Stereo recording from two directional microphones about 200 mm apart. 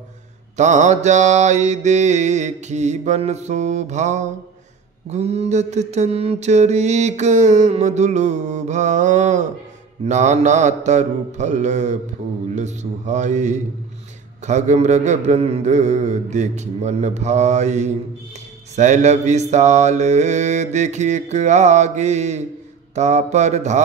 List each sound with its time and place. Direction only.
0.6 s mantra: 35° right (ahead or behind)